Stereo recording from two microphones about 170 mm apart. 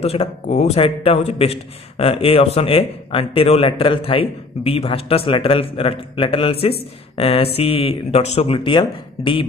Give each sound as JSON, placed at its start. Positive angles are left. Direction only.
{"t": 0.0, "sound": "a man's voice", "side_deg": 35}